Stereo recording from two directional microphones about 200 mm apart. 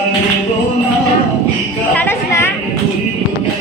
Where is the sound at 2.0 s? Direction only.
10° left (ahead or behind).